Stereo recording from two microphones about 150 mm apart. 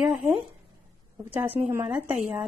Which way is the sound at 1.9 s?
5° right (ahead or behind).